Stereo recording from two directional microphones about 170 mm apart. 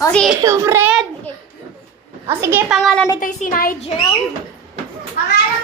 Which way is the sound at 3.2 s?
55° left (ahead or behind).